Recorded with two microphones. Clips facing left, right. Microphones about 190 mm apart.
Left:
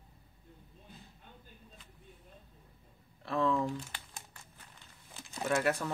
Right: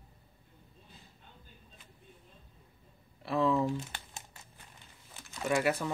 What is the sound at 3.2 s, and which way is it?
Speech, 10° right (ahead or behind).